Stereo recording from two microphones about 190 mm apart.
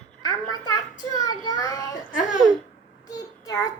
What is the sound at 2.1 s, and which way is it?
Speech, 40° left (ahead or behind).